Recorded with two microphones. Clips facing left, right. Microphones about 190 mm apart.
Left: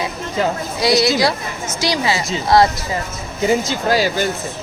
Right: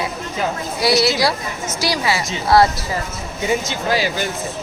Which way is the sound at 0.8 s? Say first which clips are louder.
Left 1 dB; 20° left (ahead or behind).